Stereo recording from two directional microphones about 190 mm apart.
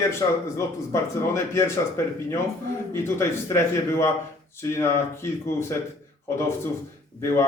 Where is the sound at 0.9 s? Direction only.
15° left (ahead or behind).